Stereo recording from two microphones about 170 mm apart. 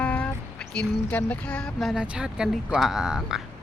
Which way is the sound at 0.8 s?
10° left (ahead or behind).